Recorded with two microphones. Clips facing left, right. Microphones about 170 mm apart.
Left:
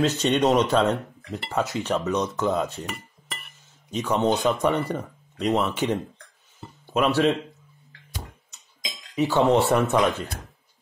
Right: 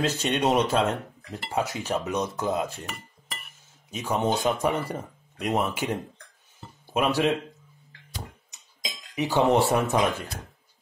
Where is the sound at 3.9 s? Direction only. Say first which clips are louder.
Left 3 dB; 10° right (ahead or behind).